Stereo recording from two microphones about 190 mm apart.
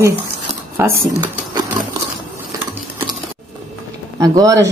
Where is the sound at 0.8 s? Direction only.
10° right (ahead or behind).